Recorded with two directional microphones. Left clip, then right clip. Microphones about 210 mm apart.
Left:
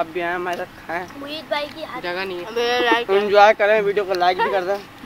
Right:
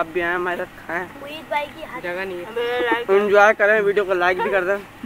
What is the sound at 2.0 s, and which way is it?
Speech, 55° left (ahead or behind).